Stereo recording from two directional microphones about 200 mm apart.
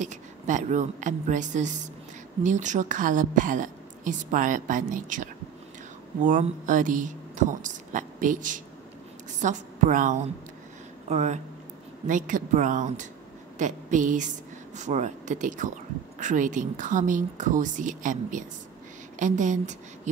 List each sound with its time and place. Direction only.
0.0 s a woman's voice: 35° right (ahead or behind)